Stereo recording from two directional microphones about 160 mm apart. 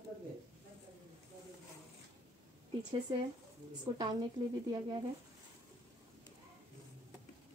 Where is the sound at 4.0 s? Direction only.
25° right (ahead or behind).